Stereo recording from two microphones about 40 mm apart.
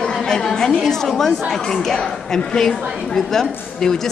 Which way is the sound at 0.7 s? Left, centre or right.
Centre.